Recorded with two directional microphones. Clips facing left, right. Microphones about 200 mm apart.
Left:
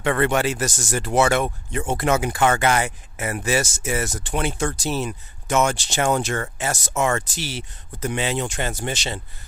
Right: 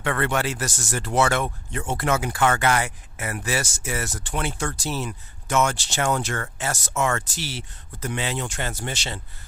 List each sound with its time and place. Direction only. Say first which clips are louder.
0.0 s speech: left 4 dB; 20° left (ahead or behind)